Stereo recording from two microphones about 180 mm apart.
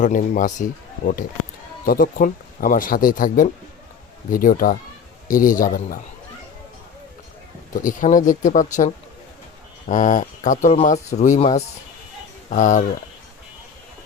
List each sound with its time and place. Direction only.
0.0 s speech: 45° left (ahead or behind)
7.7 s speech: 50° left (ahead or behind)
9.9 s speech: 45° left (ahead or behind)